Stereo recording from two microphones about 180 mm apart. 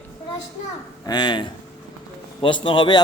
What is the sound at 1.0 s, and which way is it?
A man's voice, 25° left (ahead or behind).